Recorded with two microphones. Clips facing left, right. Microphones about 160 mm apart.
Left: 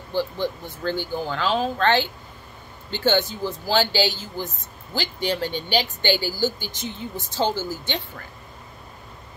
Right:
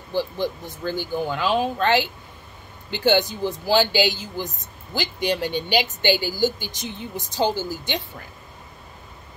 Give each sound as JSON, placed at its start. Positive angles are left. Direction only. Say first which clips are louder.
{"t": 0.1, "sound": "speech", "louder": "even", "side_deg": -15}